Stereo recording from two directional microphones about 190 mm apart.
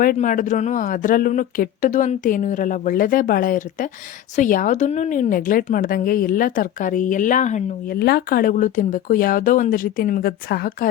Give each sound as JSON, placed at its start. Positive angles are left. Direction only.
{"t": 0.0, "sound": "a woman's voice", "side_deg": 45}
{"t": 7.9, "sound": "a woman's voice", "side_deg": 55}